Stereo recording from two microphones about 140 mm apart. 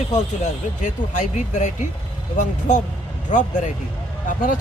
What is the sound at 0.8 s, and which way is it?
Speech, 60° left (ahead or behind).